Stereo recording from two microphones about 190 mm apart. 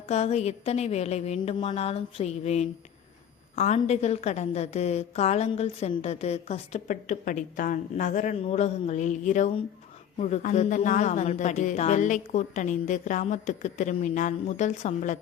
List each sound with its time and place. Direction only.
0.1 s a woman's voice: 35° left (ahead or behind)